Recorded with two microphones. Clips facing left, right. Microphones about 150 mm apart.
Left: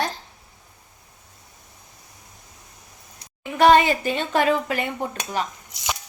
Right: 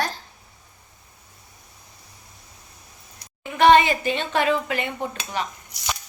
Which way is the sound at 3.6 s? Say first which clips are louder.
Even; 40° left (ahead or behind).